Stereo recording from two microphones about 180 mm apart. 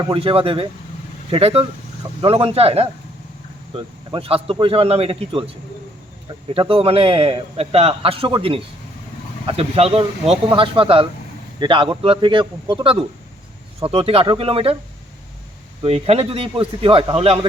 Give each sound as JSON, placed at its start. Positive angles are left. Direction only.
{"t": 0.0, "sound": "a man's voice", "side_deg": -30}
{"t": 4.1, "sound": "a man's voice", "side_deg": -30}
{"t": 6.5, "sound": "a man's voice", "side_deg": -30}
{"t": 15.8, "sound": "a man's voice", "side_deg": -35}